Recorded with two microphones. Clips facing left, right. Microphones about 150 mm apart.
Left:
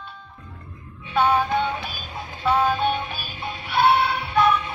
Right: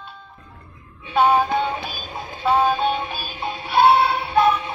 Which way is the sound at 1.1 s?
25° right (ahead or behind).